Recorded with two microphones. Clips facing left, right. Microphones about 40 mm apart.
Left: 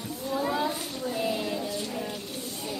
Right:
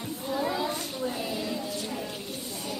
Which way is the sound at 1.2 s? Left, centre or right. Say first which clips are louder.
Left 3 dB; centre.